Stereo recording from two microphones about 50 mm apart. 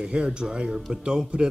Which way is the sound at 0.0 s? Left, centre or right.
Centre.